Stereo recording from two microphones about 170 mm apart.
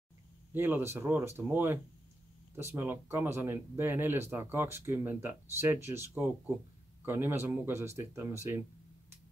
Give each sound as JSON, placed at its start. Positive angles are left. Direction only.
{"t": 0.5, "sound": "speech", "side_deg": -10}